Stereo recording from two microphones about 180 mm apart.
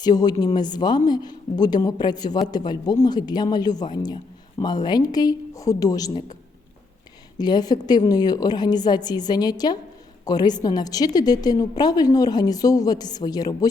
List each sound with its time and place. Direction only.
0.0 s a woman's voice: 20° left (ahead or behind)
7.3 s a woman's voice: 20° left (ahead or behind)